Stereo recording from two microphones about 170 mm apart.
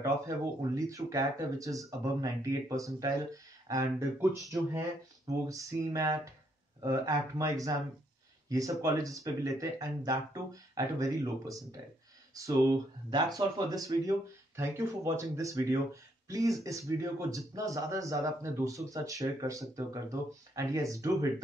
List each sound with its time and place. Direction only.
0.6 s speech: 20° right (ahead or behind)